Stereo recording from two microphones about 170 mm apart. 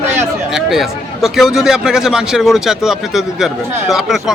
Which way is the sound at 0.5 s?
Centre (ahead or behind).